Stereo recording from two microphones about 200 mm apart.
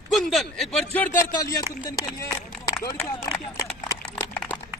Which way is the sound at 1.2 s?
15° left (ahead or behind).